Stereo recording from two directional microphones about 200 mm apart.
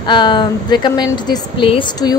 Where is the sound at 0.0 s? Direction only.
25° left (ahead or behind).